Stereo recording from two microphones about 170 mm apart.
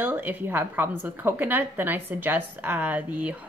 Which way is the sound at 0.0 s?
10° right (ahead or behind).